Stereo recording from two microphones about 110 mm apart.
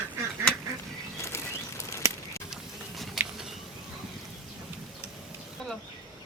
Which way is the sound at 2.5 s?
Centre (ahead or behind).